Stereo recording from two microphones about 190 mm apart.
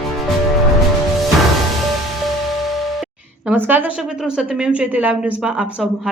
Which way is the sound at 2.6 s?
Centre (ahead or behind).